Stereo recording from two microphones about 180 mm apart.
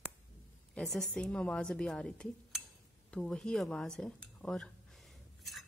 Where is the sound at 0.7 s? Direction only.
Centre (ahead or behind).